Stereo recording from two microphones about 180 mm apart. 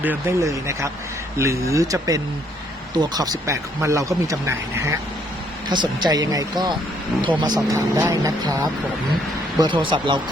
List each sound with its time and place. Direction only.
0.0 s speech: 10° right (ahead or behind); by 10.2 s 25° right (ahead or behind)